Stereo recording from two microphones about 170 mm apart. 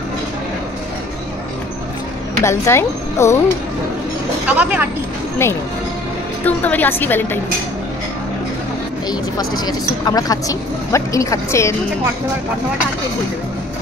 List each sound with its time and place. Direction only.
2.4 s a woman's voice: 15° left (ahead or behind)
4.5 s speech: 5° right (ahead or behind)
5.4 s a woman's voice: 15° left (ahead or behind)
9.4 s speech: 25° left (ahead or behind)